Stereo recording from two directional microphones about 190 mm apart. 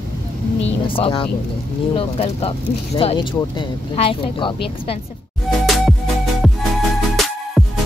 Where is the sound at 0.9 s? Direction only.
25° left (ahead or behind).